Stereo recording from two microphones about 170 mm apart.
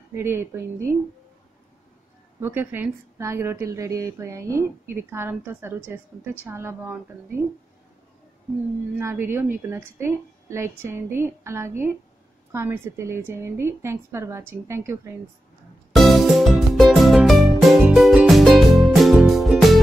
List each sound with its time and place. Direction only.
0.1 s a woman's voice: 15° right (ahead or behind)
2.4 s a woman's voice: 10° right (ahead or behind)
8.9 s a woman's voice: 10° right (ahead or behind)
15.9 s music: centre (ahead or behind)